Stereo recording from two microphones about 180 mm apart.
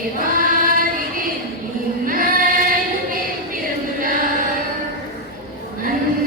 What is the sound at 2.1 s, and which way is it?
Child singing, 50° right (ahead or behind).